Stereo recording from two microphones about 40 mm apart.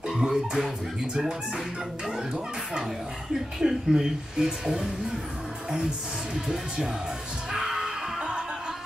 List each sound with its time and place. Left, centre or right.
0.1 s music: centre
2.0 s music: centre
3.5 s speech: centre
4.5 s music: right
6.3 s speech: centre
7.5 s a sound: centre